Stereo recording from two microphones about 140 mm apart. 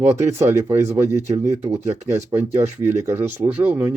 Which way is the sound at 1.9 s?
55° right (ahead or behind).